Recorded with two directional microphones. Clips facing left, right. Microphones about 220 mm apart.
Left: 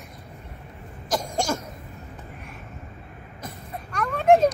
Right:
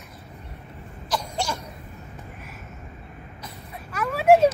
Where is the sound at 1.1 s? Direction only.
45° left (ahead or behind).